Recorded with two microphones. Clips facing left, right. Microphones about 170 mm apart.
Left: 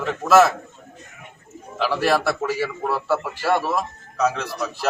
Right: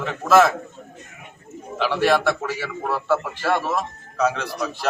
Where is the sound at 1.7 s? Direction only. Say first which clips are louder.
Right 1 dB; centre (ahead or behind).